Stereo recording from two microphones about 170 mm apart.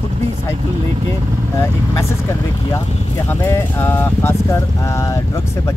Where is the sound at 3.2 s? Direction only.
15° left (ahead or behind).